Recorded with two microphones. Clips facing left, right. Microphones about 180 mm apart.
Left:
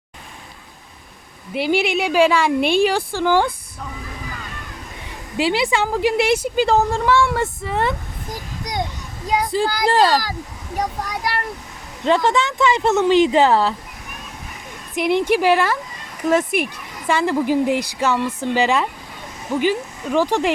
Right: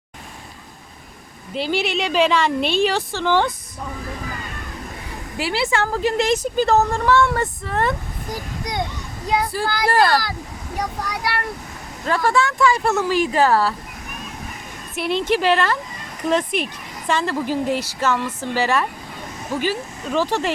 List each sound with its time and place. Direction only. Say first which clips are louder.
1.5 s speech: left 3 dB; 15° left (ahead or behind)
5.4 s speech: left 3 dB; 15° left (ahead or behind)
9.3 s speech: left 2 dB; 15° left (ahead or behind)
12.0 s speech: left 2 dB; 20° left (ahead or behind)
14.9 s speech: left 3 dB; 15° left (ahead or behind)